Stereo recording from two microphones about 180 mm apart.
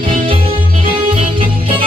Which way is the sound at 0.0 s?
30° right (ahead or behind).